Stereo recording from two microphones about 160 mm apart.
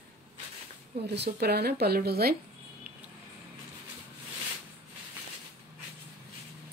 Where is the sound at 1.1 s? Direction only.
90° right.